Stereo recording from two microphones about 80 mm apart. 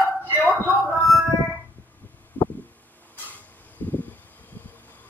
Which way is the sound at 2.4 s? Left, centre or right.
Left.